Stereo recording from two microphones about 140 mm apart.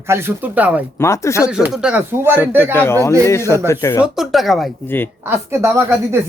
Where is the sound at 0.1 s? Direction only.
15° right (ahead or behind).